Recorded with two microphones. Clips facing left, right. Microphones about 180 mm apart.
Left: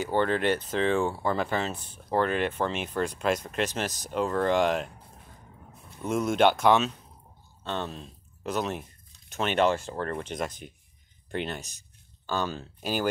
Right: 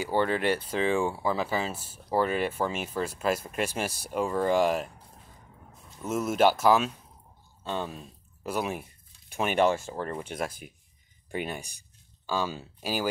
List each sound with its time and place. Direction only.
0.0 s speech: 10° right (ahead or behind)
6.0 s speech: 5° right (ahead or behind)